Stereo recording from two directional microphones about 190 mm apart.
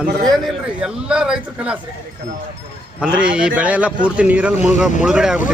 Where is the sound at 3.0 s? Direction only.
5° right (ahead or behind).